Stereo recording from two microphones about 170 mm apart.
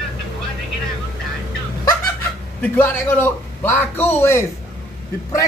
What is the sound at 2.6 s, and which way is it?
A man's voice, 10° left (ahead or behind).